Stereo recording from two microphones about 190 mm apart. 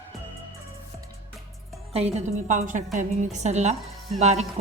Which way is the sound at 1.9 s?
35° right (ahead or behind).